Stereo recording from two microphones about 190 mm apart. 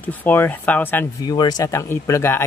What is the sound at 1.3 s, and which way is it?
Speech, 20° left (ahead or behind).